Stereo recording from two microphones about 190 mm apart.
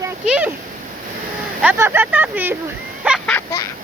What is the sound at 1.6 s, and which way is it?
Speech, 10° right (ahead or behind).